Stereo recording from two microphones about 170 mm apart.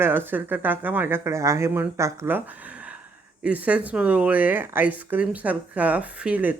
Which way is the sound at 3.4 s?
10° right (ahead or behind).